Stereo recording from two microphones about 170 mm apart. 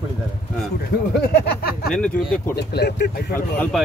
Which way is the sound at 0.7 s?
65° left (ahead or behind).